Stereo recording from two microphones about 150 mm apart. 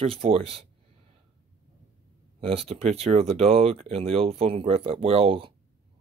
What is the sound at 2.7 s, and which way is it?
Speech, 40° right (ahead or behind).